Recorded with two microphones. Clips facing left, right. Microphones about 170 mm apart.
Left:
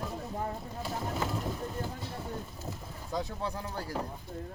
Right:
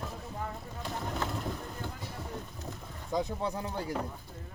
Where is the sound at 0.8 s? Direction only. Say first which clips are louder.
Left 1 dB; 5° left (ahead or behind).